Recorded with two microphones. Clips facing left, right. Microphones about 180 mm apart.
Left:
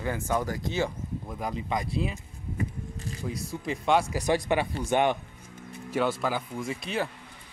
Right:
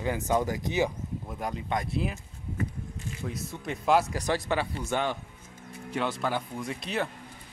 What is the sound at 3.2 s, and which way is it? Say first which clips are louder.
Speech: left 3 dB; centre (ahead or behind).